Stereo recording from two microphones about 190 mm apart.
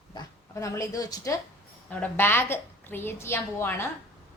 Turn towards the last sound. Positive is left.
turn(degrees=10)  # may be behind; listen again after turning